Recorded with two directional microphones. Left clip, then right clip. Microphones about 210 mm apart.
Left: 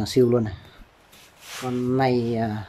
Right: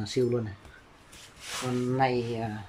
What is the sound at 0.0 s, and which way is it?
Speech, 25° left (ahead or behind).